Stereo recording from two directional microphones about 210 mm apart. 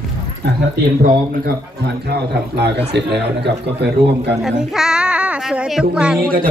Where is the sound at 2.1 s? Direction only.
50° right (ahead or behind).